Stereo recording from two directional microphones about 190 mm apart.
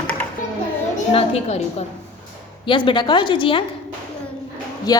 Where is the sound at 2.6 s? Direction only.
25° left (ahead or behind).